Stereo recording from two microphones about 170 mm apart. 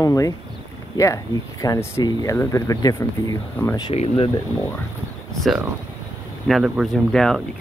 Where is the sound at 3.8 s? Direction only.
35° left (ahead or behind).